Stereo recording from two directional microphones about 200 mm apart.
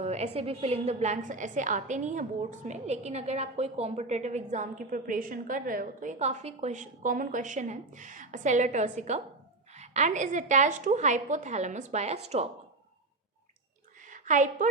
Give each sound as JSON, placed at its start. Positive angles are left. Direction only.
{"t": 0.0, "sound": "a woman's voice", "side_deg": -30}
{"t": 14.1, "sound": "a woman's voice", "side_deg": -40}